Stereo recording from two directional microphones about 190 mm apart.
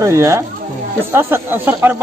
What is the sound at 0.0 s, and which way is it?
Speech, 15° right (ahead or behind).